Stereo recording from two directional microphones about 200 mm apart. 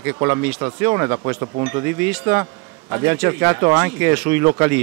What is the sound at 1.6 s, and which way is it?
Speech, 10° right (ahead or behind).